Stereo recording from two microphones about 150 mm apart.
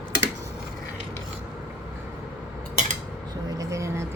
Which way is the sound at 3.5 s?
20° right (ahead or behind).